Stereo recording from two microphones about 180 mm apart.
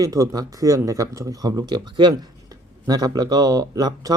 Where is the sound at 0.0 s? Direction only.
20° right (ahead or behind).